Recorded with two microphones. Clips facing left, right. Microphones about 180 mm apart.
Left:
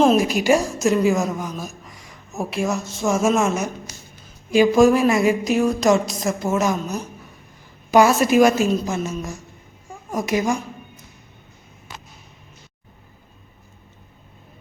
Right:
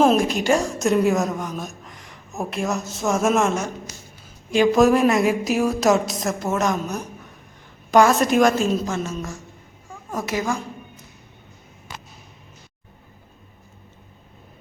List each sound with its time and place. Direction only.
0.0 s a woman's voice: centre (ahead or behind)